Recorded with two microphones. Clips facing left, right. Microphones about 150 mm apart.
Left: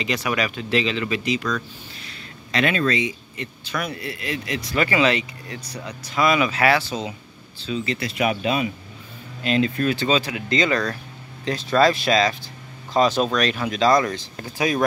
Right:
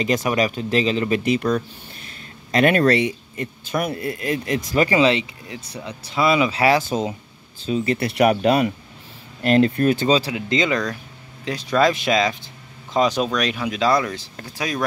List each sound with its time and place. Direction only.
0.0 s speech: 45° right (ahead or behind)
2.5 s speech: 45° right (ahead or behind); by 3.2 s 60° right (ahead or behind)
3.3 s speech: 50° right (ahead or behind); by 6.8 s 30° right (ahead or behind)
6.8 s speech: 45° right (ahead or behind)
10.1 s speech: 25° right (ahead or behind); by 14.2 s 10° right (ahead or behind)
14.3 s speech: centre (ahead or behind)